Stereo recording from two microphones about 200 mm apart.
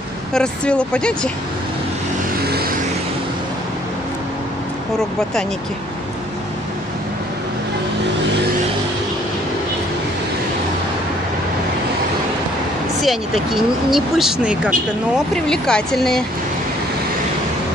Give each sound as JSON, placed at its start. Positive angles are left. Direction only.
{"t": 0.3, "sound": "speech", "side_deg": 5}
{"t": 2.4, "sound": "vehicle", "side_deg": -50}
{"t": 13.0, "sound": "speech", "side_deg": 0}